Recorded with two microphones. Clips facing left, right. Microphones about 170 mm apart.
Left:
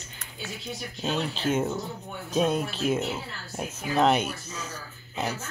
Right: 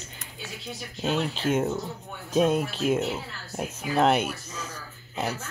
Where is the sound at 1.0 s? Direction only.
5° right (ahead or behind).